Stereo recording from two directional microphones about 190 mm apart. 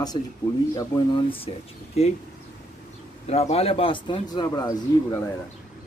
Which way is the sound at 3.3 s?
35° left (ahead or behind).